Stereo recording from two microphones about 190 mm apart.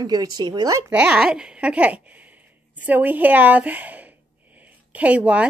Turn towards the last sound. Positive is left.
turn(degrees=-5)  # may be behind; listen again after turning